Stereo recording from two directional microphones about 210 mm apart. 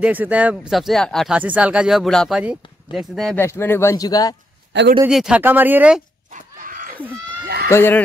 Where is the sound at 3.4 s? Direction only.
10° left (ahead or behind).